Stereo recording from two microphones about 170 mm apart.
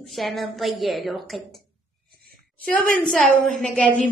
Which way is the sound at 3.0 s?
5° left (ahead or behind).